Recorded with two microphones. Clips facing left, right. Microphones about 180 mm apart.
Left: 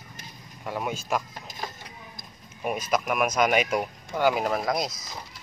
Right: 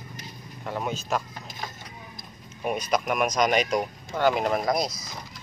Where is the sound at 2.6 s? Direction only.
Centre (ahead or behind).